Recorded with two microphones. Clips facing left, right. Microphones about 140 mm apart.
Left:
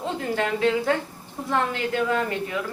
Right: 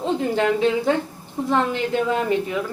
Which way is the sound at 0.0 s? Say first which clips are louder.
Right 5 dB; 20° right (ahead or behind).